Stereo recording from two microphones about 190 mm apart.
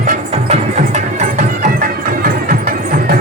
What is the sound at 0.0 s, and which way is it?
Music, 35° right (ahead or behind).